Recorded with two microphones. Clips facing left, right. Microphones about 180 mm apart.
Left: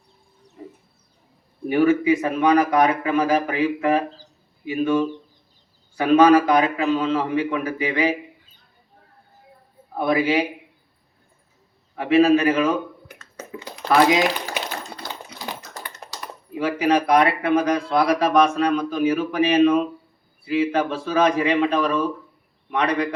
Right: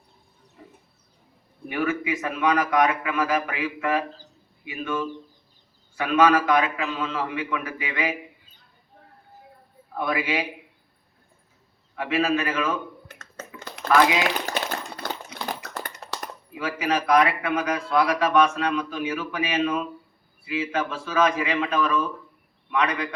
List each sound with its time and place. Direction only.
1.7 s a man's voice: 30° left (ahead or behind)
9.9 s a man's voice: 35° left (ahead or behind)
11.9 s a man's voice: 35° left (ahead or behind)
13.6 s typing: 60° right (ahead or behind)
13.9 s a man's voice: 35° left (ahead or behind)
15.4 s typing: 65° right (ahead or behind)
16.6 s a man's voice: 35° left (ahead or behind)